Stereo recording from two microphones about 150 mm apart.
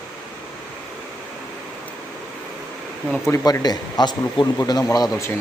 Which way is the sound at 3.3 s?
25° left (ahead or behind).